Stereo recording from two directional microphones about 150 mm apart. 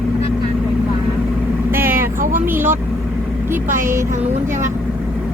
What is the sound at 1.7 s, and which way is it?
Vehicle, 15° right (ahead or behind).